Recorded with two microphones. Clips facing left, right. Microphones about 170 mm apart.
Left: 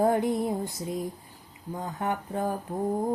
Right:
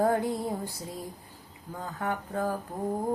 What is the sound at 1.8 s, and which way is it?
Female singing, 20° left (ahead or behind).